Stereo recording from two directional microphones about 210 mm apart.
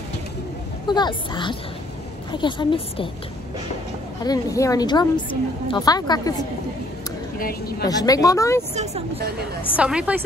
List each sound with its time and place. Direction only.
0.8 s a woman's voice: 20° left (ahead or behind)
4.2 s a woman's voice: 15° left (ahead or behind)
7.3 s speech: 45° left (ahead or behind)
7.8 s a woman's voice: 15° left (ahead or behind)
8.7 s speech: 30° right (ahead or behind)
9.8 s a woman's voice: 5° right (ahead or behind)